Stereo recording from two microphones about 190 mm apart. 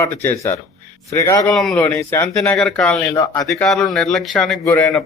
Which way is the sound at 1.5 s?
Centre (ahead or behind).